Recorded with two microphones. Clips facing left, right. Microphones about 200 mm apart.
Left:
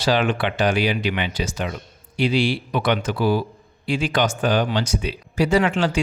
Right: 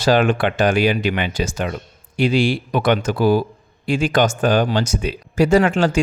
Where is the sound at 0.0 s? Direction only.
45° right (ahead or behind).